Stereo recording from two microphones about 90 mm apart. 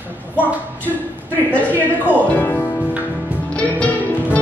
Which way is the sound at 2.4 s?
20° left (ahead or behind).